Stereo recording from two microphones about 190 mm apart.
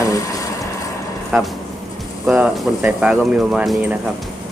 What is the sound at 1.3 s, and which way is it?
Speech, 5° right (ahead or behind).